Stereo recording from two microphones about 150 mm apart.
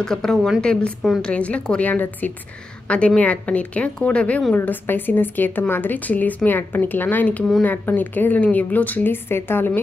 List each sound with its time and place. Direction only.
0.0 s a woman's voice: 5° left (ahead or behind)